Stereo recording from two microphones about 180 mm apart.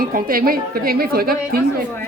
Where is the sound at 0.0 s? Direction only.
50° right (ahead or behind).